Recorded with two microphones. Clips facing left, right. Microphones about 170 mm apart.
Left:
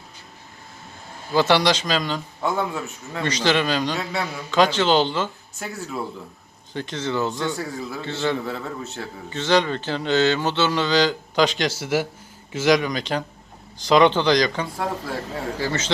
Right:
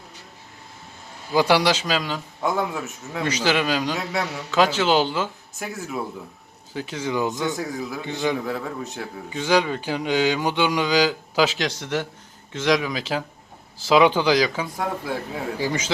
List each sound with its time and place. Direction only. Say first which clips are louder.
1.3 s speech: even; 10° right (ahead or behind)
4.3 s a man's voice: right 1 dB; 75° right (ahead or behind)
4.5 s speech: left 1 dB; 5° right (ahead or behind)
7.5 s speech: right 1 dB; centre (ahead or behind)
8.0 s speech: left 1 dB; 15° right (ahead or behind)
8.4 s speech: right 1 dB; centre (ahead or behind)
15.5 s speech: right 1 dB; 15° right (ahead or behind)